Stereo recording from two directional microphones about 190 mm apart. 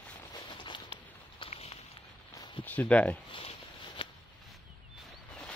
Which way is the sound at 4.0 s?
30° left (ahead or behind).